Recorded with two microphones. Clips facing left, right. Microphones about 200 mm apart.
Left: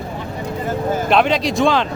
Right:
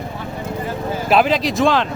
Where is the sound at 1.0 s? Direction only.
5° right (ahead or behind).